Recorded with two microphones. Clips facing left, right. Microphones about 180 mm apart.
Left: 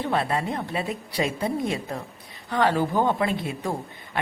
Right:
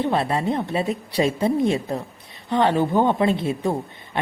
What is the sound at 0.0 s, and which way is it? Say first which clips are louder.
Speech: right 4 dB; 25° right (ahead or behind).